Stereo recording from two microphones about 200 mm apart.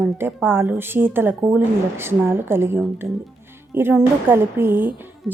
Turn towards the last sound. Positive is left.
turn(degrees=0)  # may be behind; listen again after turning